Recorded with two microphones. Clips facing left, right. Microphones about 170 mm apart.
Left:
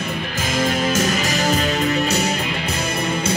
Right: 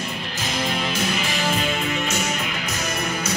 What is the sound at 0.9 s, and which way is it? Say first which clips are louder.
Music: left 5 dB; 45° left (ahead or behind).